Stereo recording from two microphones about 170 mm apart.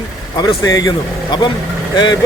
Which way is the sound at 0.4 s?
20° left (ahead or behind).